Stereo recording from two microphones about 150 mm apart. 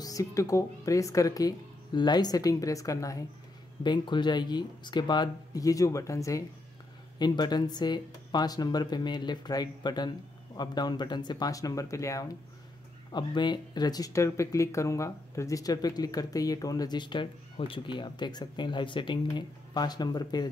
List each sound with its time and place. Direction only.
0.0 s speech: 20° left (ahead or behind)